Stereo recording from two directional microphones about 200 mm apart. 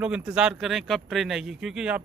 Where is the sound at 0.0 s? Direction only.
5° right (ahead or behind).